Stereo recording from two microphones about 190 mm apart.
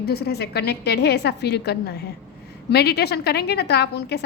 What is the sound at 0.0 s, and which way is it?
A woman's voice, 55° left (ahead or behind).